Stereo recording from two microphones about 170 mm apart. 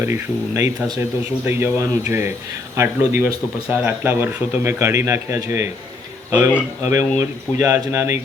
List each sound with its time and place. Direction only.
0.0 s speech: 15° right (ahead or behind)